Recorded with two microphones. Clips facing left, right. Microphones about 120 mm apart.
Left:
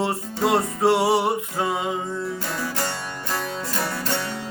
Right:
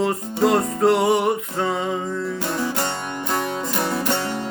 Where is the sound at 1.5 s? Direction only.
5° left (ahead or behind).